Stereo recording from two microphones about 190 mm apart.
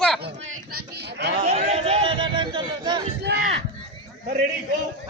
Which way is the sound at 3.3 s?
65° right (ahead or behind).